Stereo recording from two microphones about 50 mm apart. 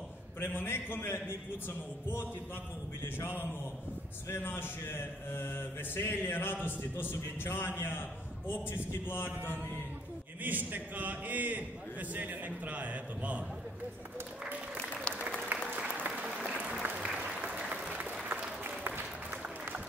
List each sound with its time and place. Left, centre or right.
0.4 s mantra: left
3.0 s mantra: left
6.3 s mantra: left
10.4 s a man's voice: right
15.1 s applause: centre
16.1 s applause: centre; by 19.0 s right